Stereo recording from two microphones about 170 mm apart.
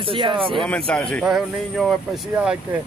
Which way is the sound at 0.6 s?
5° left (ahead or behind).